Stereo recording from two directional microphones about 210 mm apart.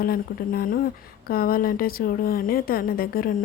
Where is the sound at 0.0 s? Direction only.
45° left (ahead or behind).